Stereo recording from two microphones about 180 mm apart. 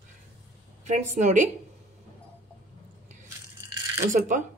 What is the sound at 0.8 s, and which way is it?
Speech, 40° right (ahead or behind).